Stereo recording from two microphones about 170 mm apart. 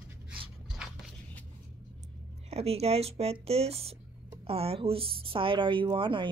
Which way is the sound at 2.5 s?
35° right (ahead or behind).